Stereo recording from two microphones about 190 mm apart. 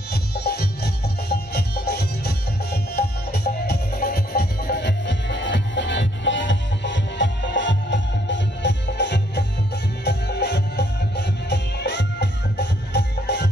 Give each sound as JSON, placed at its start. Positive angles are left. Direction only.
{"t": 0.1, "sound": "music", "side_deg": 55}